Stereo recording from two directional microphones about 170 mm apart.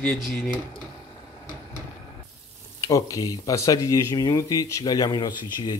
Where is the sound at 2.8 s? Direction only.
20° left (ahead or behind).